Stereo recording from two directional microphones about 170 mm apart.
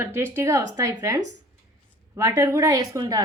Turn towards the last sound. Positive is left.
turn(degrees=-20)  # may be behind; listen again after turning